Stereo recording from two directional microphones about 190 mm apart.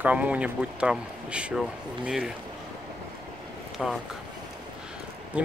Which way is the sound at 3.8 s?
Centre (ahead or behind).